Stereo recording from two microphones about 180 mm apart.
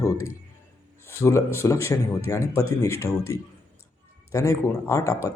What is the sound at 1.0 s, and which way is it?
Speech, 15° left (ahead or behind).